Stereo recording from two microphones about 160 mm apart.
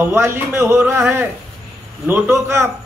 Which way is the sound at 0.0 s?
15° right (ahead or behind).